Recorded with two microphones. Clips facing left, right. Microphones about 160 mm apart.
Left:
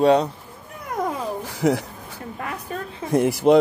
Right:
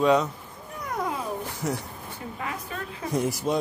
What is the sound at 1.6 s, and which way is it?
Speech, 90° left.